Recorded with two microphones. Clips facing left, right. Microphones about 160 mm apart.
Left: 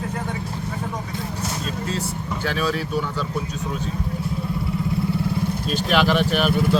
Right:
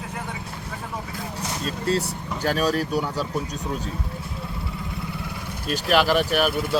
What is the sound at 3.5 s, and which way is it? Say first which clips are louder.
Speech: left 2 dB; 35° right (ahead or behind).